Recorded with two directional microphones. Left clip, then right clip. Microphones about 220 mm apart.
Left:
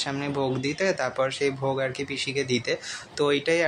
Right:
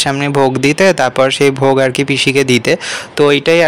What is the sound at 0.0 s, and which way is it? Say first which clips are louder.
Speech: right 16 dB; 45° right (ahead or behind).